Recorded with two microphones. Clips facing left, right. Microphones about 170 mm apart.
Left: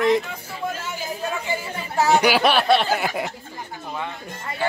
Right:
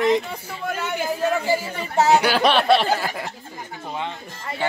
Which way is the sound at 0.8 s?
65° right (ahead or behind).